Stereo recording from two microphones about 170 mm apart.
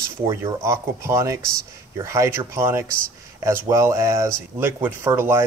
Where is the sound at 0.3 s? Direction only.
15° right (ahead or behind).